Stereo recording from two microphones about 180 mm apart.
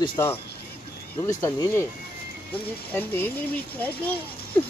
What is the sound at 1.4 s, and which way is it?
Speech, 15° left (ahead or behind).